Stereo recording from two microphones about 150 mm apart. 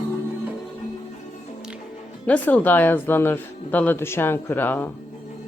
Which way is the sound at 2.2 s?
10° left (ahead or behind).